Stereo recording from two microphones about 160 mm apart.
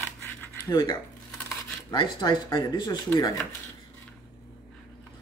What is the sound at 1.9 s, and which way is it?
Speech, 30° left (ahead or behind).